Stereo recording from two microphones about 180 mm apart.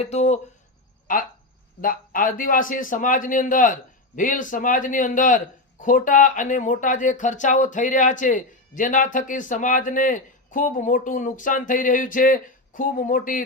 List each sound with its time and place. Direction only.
0.0 s speech: 40° left (ahead or behind)
1.1 s speech: 50° left (ahead or behind)